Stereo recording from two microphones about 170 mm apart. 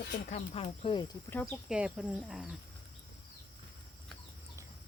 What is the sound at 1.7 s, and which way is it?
Speech, 5° right (ahead or behind).